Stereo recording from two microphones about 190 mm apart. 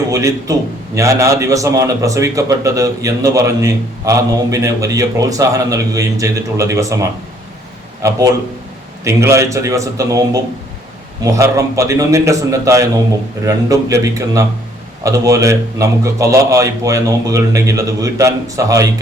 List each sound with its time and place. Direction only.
0.1 s a man's voice: 15° right (ahead or behind)
8.0 s a man's voice: 15° right (ahead or behind)